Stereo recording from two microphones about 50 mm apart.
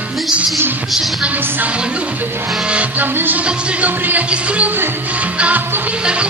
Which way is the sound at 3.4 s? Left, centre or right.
Right.